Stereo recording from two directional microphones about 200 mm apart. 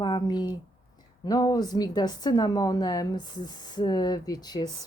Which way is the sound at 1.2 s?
20° left (ahead or behind).